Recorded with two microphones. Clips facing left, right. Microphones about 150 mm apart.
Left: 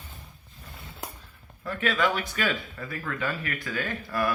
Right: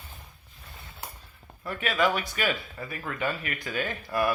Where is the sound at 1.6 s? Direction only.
10° right (ahead or behind).